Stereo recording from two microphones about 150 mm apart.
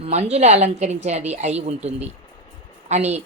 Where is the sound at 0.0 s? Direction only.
45° right (ahead or behind).